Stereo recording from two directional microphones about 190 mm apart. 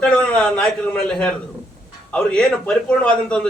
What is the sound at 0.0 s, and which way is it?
A man's voice, 5° left (ahead or behind).